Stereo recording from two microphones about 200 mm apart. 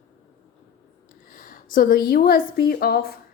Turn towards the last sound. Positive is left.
turn(degrees=50)  # may be behind; listen again after turning